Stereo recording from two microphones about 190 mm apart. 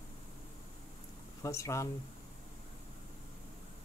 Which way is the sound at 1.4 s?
15° left (ahead or behind).